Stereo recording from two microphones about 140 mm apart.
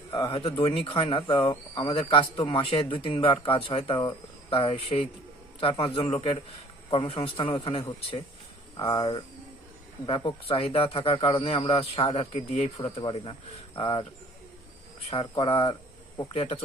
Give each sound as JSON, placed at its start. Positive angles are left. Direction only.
{"t": 0.1, "sound": "a man's voice", "side_deg": 35}
{"t": 15.1, "sound": "a man's voice", "side_deg": 35}